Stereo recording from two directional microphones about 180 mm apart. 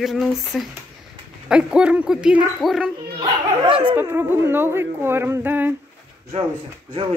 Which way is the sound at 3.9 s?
15° right (ahead or behind).